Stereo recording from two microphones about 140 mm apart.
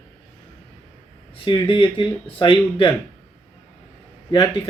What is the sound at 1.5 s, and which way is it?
Speech, 35° left (ahead or behind).